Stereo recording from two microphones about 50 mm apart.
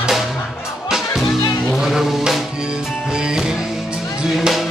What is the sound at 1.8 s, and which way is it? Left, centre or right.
Music, centre.